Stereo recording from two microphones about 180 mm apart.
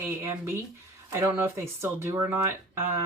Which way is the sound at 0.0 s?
15° right (ahead or behind).